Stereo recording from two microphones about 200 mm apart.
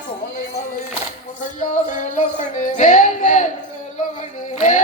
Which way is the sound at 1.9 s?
40° left (ahead or behind).